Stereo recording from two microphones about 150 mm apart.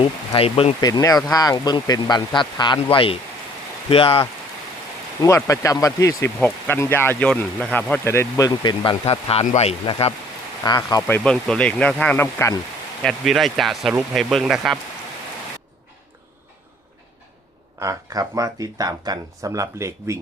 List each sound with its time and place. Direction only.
0.0 s speech: 40° left (ahead or behind)
0.8 s speech: 25° left (ahead or behind)
5.2 s speech: 20° left (ahead or behind)
9.0 s speech: 45° left (ahead or behind)
10.6 s speech: 25° left (ahead or behind)
11.0 s speech: 5° left (ahead or behind)
13.0 s speech: centre (ahead or behind)
17.7 s speech: 20° right (ahead or behind)